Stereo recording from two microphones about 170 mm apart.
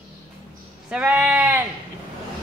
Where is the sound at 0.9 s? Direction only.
5° right (ahead or behind).